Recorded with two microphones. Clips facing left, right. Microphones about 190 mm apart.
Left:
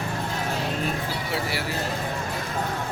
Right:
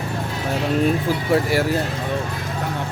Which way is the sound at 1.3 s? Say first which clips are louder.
Right 12 dB; 45° right (ahead or behind).